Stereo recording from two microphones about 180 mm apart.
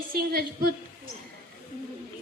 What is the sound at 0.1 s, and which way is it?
Speech, 55° right (ahead or behind).